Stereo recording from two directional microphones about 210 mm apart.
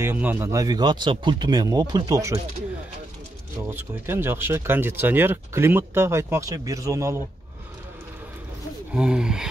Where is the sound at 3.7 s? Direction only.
10° right (ahead or behind).